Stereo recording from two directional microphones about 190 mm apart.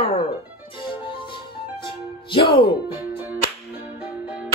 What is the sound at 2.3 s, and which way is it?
Speech, 25° left (ahead or behind).